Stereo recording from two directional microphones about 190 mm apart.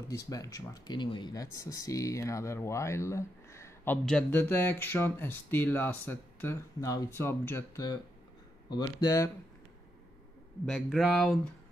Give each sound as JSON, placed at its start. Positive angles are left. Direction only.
{"t": 0.1, "sound": "speech", "side_deg": 20}
{"t": 10.6, "sound": "a man's voice", "side_deg": 0}